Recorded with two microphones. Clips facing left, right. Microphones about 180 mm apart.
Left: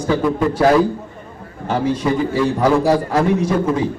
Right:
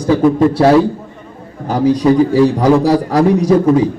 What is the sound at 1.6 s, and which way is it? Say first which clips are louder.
A man's voice: right 7 dB; 35° right (ahead or behind).